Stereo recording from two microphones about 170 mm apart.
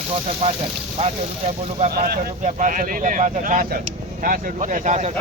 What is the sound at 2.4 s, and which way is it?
Speech, 50° right (ahead or behind).